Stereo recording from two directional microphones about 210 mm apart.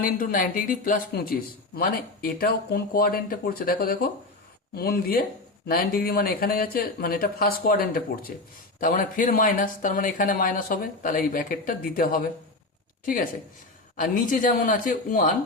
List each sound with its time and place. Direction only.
0.0 s speech: 40° left (ahead or behind)
13.9 s speech: 40° left (ahead or behind)